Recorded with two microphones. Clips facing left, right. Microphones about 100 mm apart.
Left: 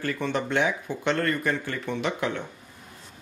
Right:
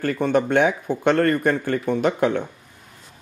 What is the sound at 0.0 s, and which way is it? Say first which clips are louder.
Speech: right 8 dB; 50° right (ahead or behind).